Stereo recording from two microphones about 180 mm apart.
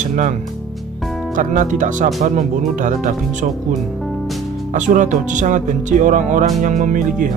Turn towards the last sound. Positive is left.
turn(degrees=-45)  # may be behind; listen again after turning